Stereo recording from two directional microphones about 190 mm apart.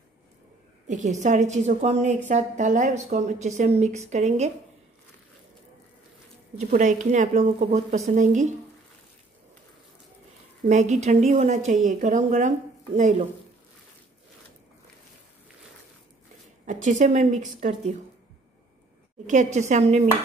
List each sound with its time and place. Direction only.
0.8 s speech: 40° right (ahead or behind)
6.6 s speech: 40° right (ahead or behind)
10.7 s speech: 35° right (ahead or behind)
16.6 s speech: 40° right (ahead or behind)
19.2 s speech: 40° right (ahead or behind)